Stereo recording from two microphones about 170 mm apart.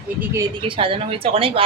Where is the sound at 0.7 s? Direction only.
30° right (ahead or behind).